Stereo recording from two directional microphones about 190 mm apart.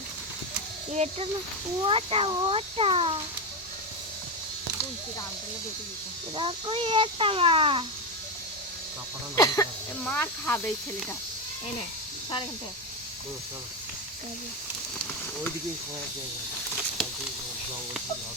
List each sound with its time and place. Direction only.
0.9 s speech: 35° right (ahead or behind)
6.3 s speech: 25° right (ahead or behind)
9.3 s speech: 20° left (ahead or behind)